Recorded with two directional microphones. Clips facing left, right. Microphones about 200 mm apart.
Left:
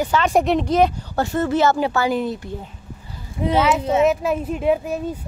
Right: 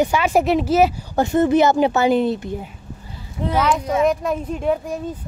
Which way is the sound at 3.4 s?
5° left (ahead or behind).